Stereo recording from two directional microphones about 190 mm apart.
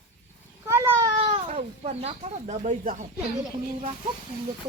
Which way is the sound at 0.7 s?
15° right (ahead or behind).